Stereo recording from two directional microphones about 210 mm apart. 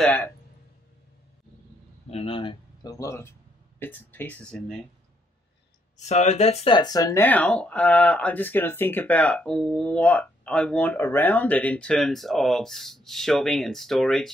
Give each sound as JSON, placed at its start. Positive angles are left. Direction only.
{"t": 0.0, "sound": "speech", "side_deg": 5}
{"t": 2.0, "sound": "speech", "side_deg": 25}
{"t": 5.9, "sound": "speech", "side_deg": 35}